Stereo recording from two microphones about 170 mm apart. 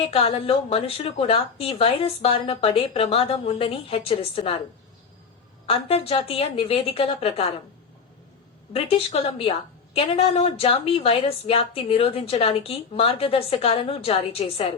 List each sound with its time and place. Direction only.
0.0 s a woman's voice: 35° left (ahead or behind)
5.6 s a woman's voice: 35° left (ahead or behind)
8.7 s a woman's voice: 35° left (ahead or behind)